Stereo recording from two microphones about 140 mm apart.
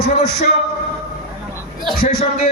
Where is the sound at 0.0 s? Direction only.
55° left (ahead or behind).